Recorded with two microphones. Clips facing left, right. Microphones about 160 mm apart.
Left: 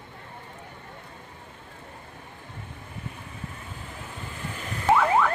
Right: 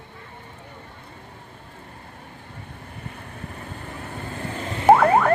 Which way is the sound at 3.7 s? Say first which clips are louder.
Right 5 dB; 65° right (ahead or behind).